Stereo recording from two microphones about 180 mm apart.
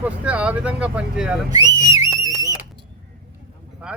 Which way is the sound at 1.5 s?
20° right (ahead or behind).